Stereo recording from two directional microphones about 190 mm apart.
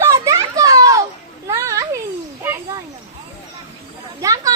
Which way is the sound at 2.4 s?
10° right (ahead or behind).